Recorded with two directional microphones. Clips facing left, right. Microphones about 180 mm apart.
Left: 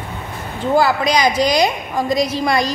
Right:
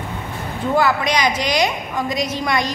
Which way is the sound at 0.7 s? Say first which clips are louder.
Left 3 dB; 35° left (ahead or behind).